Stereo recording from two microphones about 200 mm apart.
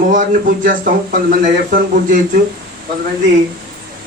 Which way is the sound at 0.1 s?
40° right (ahead or behind).